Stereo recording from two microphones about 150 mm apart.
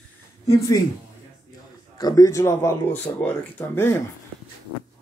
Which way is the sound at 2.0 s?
25° left (ahead or behind).